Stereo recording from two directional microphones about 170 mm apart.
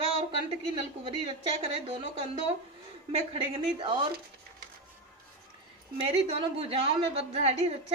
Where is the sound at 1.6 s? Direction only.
35° right (ahead or behind).